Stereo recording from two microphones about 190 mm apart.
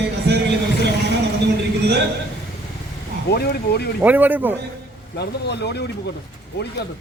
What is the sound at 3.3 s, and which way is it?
Speech, 60° left (ahead or behind).